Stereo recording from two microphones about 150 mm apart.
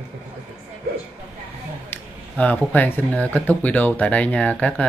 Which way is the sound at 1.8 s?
10° left (ahead or behind).